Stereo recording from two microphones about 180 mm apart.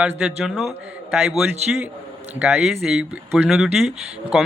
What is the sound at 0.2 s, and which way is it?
Speech, 5° right (ahead or behind).